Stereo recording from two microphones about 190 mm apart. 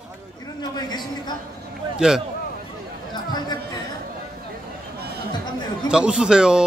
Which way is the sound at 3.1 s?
20° left (ahead or behind).